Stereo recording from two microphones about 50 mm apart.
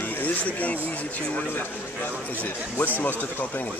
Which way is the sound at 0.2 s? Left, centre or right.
Left.